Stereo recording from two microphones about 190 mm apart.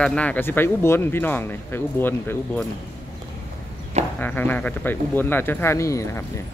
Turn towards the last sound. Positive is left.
turn(degrees=15)  # may be behind; listen again after turning